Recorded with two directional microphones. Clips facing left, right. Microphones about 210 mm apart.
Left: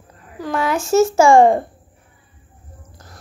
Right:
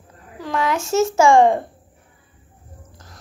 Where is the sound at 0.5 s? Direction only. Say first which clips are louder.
Left 1 dB; 5° left (ahead or behind).